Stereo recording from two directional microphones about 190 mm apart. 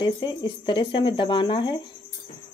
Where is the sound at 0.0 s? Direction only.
25° left (ahead or behind).